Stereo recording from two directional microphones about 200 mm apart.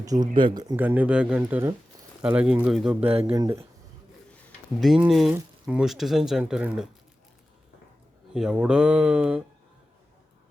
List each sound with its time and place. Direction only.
0.0 s speech: 20° right (ahead or behind)
0.8 s speech: 10° right (ahead or behind)
3.0 s speech: 30° right (ahead or behind)
3.3 s speech: 15° right (ahead or behind)
4.8 s speech: centre (ahead or behind)
8.3 s speech: 5° right (ahead or behind)